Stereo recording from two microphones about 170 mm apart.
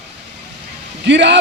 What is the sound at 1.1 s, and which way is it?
Speech, 90° right.